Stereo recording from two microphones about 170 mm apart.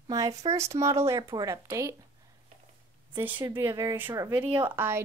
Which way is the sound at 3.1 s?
15° right (ahead or behind).